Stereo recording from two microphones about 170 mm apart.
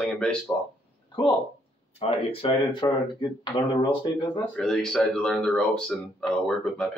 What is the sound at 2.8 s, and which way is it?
Speech, 20° left (ahead or behind).